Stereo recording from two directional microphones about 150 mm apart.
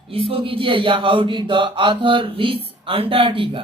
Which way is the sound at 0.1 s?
40° right (ahead or behind).